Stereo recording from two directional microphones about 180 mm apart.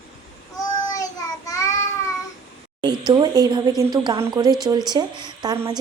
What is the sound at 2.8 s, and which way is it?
A woman's voice, 25° right (ahead or behind).